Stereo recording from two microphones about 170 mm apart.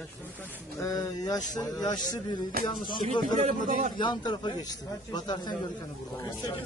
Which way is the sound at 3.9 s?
25° left (ahead or behind).